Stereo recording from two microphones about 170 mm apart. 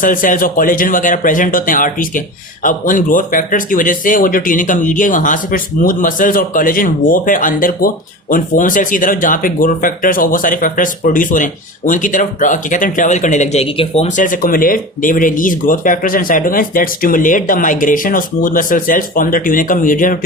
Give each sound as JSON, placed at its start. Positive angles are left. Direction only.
{"t": 0.0, "sound": "a man's voice", "side_deg": 50}